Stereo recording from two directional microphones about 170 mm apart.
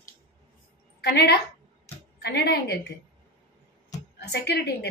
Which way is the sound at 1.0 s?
70° left (ahead or behind).